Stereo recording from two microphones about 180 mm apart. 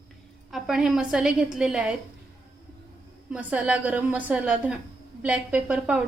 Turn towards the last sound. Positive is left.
turn(degrees=-10)  # may be behind; listen again after turning